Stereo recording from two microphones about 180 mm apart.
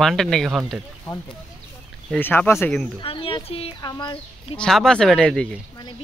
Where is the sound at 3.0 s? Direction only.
30° left (ahead or behind).